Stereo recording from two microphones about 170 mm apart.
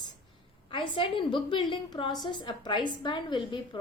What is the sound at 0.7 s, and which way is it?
A woman's voice, 30° left (ahead or behind).